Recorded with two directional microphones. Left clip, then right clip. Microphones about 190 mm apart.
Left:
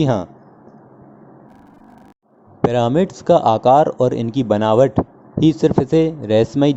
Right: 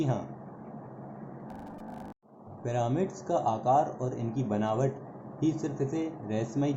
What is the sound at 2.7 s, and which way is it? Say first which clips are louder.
Speech: left 14 dB; 50° left (ahead or behind).